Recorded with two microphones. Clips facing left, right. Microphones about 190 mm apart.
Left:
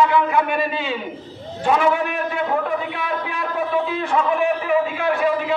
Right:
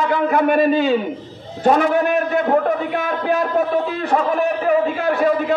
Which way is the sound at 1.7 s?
40° right (ahead or behind).